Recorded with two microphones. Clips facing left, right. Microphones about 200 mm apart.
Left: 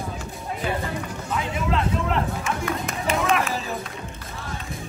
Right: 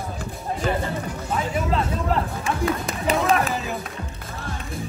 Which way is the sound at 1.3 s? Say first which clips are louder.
Right 1 dB; 35° right (ahead or behind).